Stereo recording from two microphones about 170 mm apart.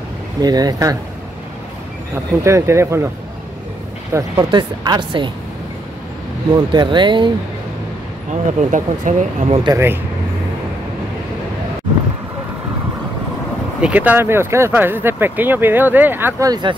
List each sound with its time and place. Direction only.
0.4 s speech: 25° right (ahead or behind)
2.4 s speech: 15° right (ahead or behind)
4.1 s speech: 25° right (ahead or behind)
6.5 s speech: 25° right (ahead or behind)
8.3 s speech: 45° right (ahead or behind)
9.6 s speech: 20° right (ahead or behind)
13.7 s speech: 10° right (ahead or behind); by 16.7 s 25° right (ahead or behind)